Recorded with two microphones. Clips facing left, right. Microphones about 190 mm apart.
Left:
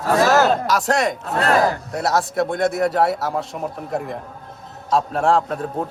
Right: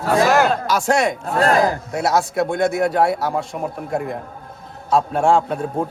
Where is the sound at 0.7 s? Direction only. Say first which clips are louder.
Right 1 dB; centre (ahead or behind).